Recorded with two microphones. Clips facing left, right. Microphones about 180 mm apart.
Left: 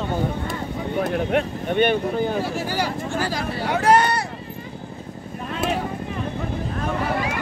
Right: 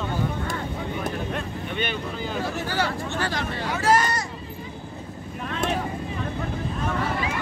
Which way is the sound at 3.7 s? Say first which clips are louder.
Left 4 dB; 65° left (ahead or behind).